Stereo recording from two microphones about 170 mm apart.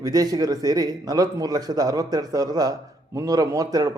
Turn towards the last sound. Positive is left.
turn(degrees=-20)  # may be behind; listen again after turning